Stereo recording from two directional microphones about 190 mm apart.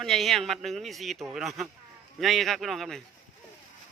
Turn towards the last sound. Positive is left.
turn(degrees=0)  # may be behind; listen again after turning